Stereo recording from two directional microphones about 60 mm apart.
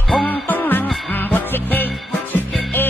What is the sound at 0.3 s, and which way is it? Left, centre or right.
Music, left.